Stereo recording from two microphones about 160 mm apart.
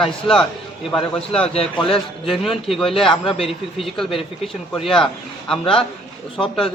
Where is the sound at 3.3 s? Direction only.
35° left (ahead or behind).